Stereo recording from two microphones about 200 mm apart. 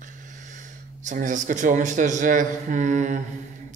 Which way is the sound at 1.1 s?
40° right (ahead or behind).